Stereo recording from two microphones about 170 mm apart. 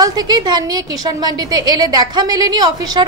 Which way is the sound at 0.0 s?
25° right (ahead or behind).